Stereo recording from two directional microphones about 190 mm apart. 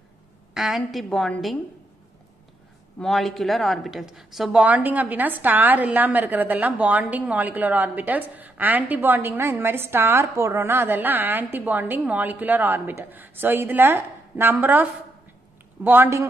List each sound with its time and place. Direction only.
0.6 s a woman's voice: centre (ahead or behind)
3.0 s speech: centre (ahead or behind)